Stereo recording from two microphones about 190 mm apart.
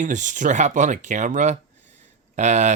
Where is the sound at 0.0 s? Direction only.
40° right (ahead or behind).